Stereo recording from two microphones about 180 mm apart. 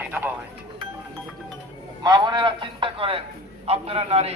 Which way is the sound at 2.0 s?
25° right (ahead or behind).